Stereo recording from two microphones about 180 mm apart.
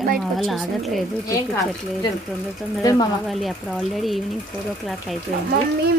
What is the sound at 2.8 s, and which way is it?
Speech, 20° left (ahead or behind).